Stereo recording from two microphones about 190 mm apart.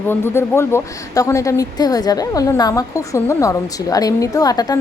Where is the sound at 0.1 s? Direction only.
10° left (ahead or behind).